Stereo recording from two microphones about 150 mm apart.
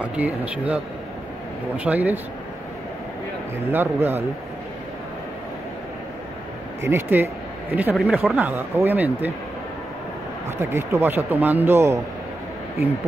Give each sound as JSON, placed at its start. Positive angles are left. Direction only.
{"t": 0.0, "sound": "speech", "side_deg": -10}
{"t": 1.8, "sound": "speech", "side_deg": -10}
{"t": 3.7, "sound": "speech", "side_deg": -15}
{"t": 6.8, "sound": "speech", "side_deg": -15}
{"t": 7.9, "sound": "speech", "side_deg": -5}
{"t": 10.6, "sound": "speech", "side_deg": -20}